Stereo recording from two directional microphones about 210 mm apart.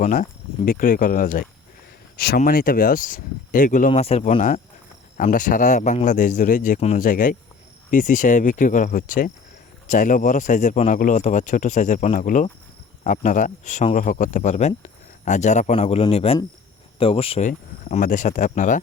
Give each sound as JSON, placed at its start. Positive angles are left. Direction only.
{"t": 0.0, "sound": "speech", "side_deg": 40}